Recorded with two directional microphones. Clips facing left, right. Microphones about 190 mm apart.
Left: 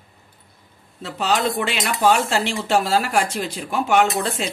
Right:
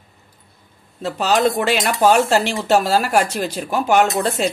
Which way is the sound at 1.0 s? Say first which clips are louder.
Right 4 dB; 40° right (ahead or behind).